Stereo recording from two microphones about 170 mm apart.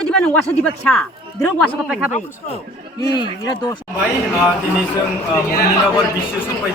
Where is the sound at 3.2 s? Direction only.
25° left (ahead or behind).